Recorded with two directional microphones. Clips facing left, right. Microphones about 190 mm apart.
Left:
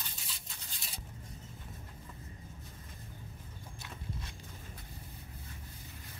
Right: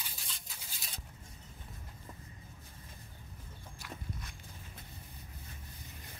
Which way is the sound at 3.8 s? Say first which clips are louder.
Even; 25° left (ahead or behind).